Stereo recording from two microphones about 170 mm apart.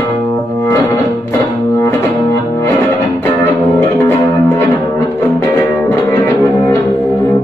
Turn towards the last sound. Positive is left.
turn(degrees=15)  # may be behind; listen again after turning